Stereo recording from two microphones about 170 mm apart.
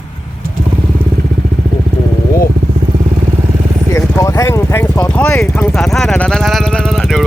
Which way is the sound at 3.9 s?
15° left (ahead or behind).